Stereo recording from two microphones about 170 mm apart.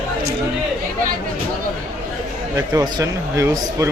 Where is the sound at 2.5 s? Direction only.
20° right (ahead or behind).